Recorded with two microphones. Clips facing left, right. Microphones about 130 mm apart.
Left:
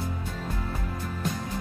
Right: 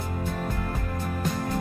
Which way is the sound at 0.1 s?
55° right (ahead or behind).